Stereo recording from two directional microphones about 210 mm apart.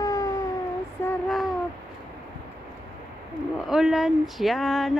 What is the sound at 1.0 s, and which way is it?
Child singing, centre (ahead or behind).